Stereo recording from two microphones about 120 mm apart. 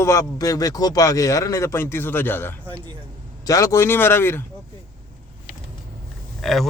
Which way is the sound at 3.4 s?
30° left (ahead or behind).